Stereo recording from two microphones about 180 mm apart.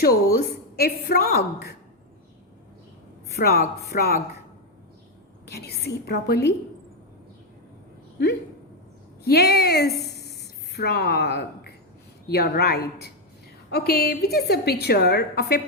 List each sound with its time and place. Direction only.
0.0 s a woman's voice: 60° left (ahead or behind)
3.4 s a woman's voice: 60° left (ahead or behind)
5.5 s a woman's voice: 65° left (ahead or behind)
9.2 s a woman's voice: 60° left (ahead or behind)
10.0 s a sound: 65° left (ahead or behind)
10.8 s a woman's voice: 65° left (ahead or behind)